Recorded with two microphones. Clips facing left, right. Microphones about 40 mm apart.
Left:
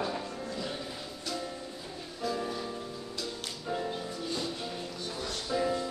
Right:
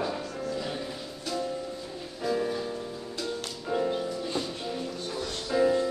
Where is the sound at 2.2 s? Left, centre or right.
Centre.